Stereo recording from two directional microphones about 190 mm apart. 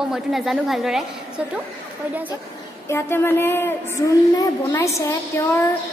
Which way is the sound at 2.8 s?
15° left (ahead or behind).